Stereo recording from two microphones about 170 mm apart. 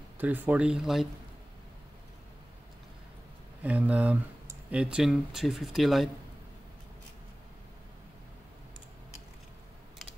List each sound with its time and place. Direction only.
0.2 s speech: 10° right (ahead or behind)
3.6 s speech: 10° right (ahead or behind)